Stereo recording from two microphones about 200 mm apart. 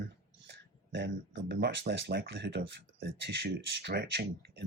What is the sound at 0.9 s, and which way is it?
Speech, 60° right (ahead or behind).